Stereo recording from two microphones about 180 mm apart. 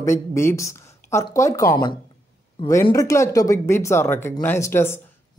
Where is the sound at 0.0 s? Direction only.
15° left (ahead or behind).